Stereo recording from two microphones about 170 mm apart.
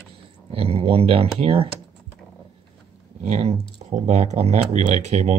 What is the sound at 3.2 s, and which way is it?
Speech, 40° right (ahead or behind).